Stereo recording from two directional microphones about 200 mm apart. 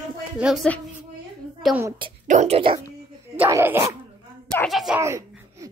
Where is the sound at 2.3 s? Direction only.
35° right (ahead or behind).